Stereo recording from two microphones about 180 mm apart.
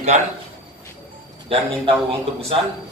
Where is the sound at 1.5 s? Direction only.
30° right (ahead or behind).